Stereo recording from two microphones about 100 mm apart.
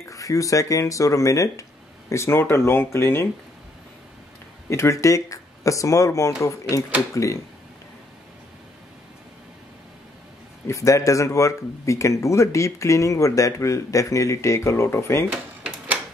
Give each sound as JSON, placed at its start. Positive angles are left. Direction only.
{"t": 0.1, "sound": "speech", "side_deg": 35}
{"t": 4.6, "sound": "speech", "side_deg": 30}
{"t": 10.7, "sound": "speech", "side_deg": 30}